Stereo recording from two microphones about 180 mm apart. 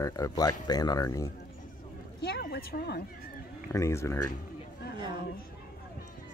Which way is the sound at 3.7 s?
15° left (ahead or behind).